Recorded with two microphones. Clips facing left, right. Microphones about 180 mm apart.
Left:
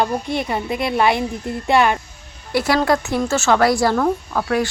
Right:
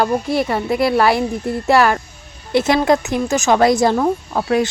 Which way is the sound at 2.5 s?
20° right (ahead or behind).